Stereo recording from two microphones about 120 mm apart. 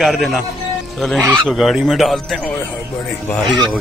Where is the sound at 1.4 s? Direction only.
Centre (ahead or behind).